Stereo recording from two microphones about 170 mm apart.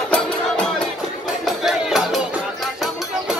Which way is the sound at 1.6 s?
Centre (ahead or behind).